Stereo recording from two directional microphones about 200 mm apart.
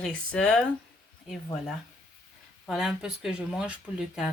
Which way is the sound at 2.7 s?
5° right (ahead or behind).